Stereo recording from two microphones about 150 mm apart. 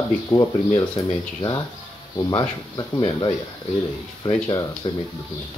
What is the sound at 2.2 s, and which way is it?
Speech, 25° left (ahead or behind).